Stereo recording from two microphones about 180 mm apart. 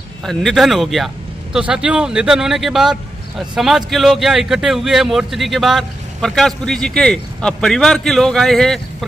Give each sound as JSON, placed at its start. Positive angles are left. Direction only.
{"t": 0.2, "sound": "speech", "side_deg": 0}